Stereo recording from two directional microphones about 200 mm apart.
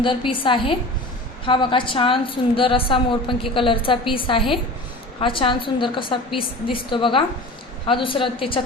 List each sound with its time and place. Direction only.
0.0 s a woman's voice: 25° left (ahead or behind)